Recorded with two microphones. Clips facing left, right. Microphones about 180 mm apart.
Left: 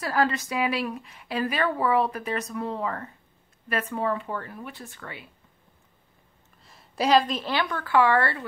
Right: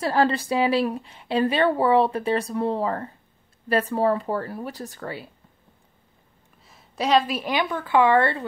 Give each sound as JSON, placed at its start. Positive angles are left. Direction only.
{"t": 0.0, "sound": "a woman's voice", "side_deg": -30}
{"t": 6.6, "sound": "a woman's voice", "side_deg": 0}